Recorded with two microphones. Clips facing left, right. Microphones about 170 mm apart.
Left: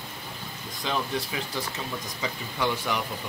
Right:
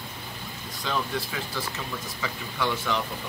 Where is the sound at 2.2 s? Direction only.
15° left (ahead or behind).